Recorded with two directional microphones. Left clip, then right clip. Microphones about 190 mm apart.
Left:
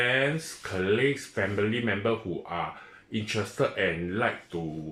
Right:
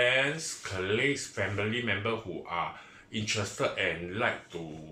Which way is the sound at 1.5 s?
45° left (ahead or behind).